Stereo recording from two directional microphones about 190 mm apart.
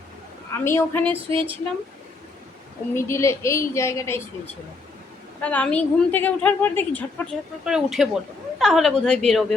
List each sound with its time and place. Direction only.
0.6 s a woman's voice: 15° left (ahead or behind)
1.1 s speech: 30° right (ahead or behind)
2.9 s a woman's voice: 15° left (ahead or behind)
5.4 s a woman's voice: 10° left (ahead or behind)
7.6 s a woman's voice: 5° right (ahead or behind)